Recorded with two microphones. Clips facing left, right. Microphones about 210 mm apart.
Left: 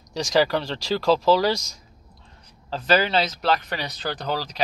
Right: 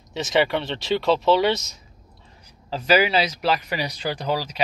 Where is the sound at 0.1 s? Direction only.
5° right (ahead or behind).